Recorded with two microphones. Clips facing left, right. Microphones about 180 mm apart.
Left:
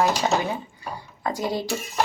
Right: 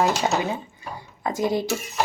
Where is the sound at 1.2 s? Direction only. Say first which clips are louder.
Right 3 dB; 20° right (ahead or behind).